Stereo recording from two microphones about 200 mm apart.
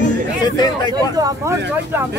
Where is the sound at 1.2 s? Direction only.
20° right (ahead or behind).